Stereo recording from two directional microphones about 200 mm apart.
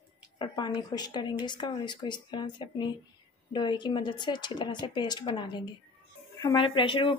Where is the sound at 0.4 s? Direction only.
25° left (ahead or behind).